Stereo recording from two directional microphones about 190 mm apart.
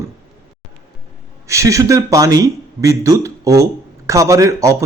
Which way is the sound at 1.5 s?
15° right (ahead or behind).